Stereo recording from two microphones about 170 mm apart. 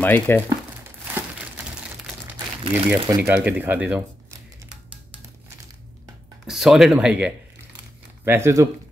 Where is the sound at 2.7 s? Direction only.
10° right (ahead or behind).